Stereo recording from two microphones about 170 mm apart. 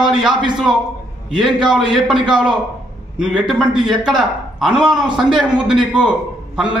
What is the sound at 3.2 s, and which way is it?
A man's voice, 5° right (ahead or behind).